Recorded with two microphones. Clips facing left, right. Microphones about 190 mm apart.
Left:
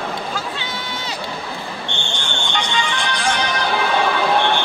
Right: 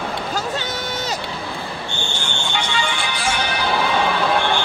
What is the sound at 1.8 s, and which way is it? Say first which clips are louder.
Music: even; 5° right (ahead or behind).